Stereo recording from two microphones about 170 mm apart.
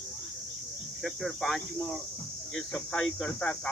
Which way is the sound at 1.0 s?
Centre (ahead or behind).